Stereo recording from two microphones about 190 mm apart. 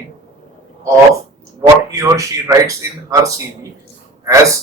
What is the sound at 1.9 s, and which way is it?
Speech, 15° right (ahead or behind).